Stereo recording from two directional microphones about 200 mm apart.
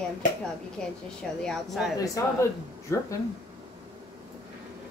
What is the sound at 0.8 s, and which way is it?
A woman's voice, 5° left (ahead or behind).